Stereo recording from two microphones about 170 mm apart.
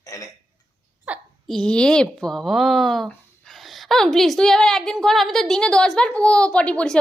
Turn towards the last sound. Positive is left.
turn(degrees=5)  # may be behind; listen again after turning